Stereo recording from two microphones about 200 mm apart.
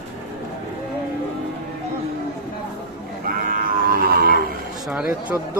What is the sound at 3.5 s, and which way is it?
Music, 45° right (ahead or behind).